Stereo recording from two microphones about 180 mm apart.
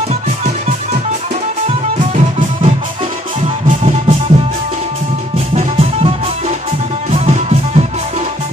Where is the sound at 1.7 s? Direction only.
35° right (ahead or behind).